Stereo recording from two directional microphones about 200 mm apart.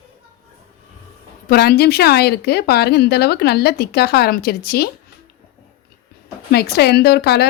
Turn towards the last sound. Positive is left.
turn(degrees=55)  # may be behind; listen again after turning